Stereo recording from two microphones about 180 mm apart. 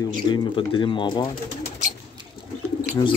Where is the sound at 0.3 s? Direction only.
25° left (ahead or behind).